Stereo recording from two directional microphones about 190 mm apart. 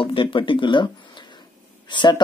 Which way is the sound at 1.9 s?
25° left (ahead or behind).